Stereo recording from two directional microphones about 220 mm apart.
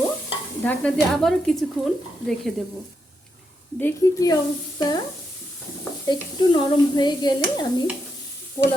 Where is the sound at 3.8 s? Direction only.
15° left (ahead or behind).